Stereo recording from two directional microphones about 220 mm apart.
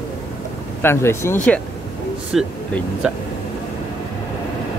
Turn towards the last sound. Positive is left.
turn(degrees=0)  # may be behind; listen again after turning